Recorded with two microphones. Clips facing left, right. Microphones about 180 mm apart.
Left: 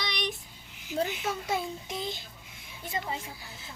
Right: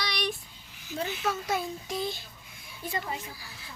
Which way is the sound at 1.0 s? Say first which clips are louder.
Right 1 dB; 20° left (ahead or behind).